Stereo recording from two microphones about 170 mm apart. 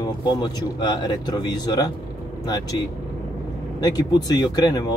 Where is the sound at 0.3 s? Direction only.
25° left (ahead or behind).